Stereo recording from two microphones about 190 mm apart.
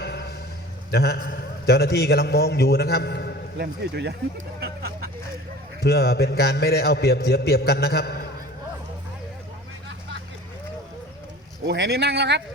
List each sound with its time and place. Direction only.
0.0 s a sound: 60° left (ahead or behind)
0.9 s a man's voice: 55° left (ahead or behind)
3.6 s speech: 65° right (ahead or behind)
5.8 s a man's voice: 55° left (ahead or behind)
11.6 s speech: 65° right (ahead or behind)